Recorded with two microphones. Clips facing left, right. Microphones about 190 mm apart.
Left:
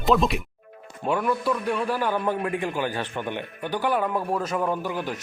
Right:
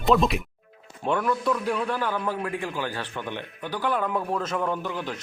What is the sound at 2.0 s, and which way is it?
A man's voice, 20° left (ahead or behind).